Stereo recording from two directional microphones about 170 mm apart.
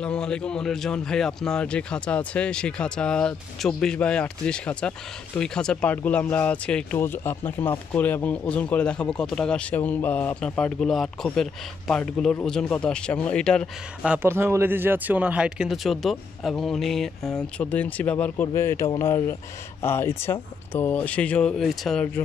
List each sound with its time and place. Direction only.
0.0 s a man's voice: 5° left (ahead or behind)
14.0 s a man's voice: 10° right (ahead or behind); by 22.2 s 5° left (ahead or behind)